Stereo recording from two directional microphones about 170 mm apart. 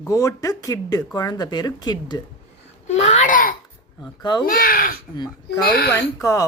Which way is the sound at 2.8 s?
40° left (ahead or behind).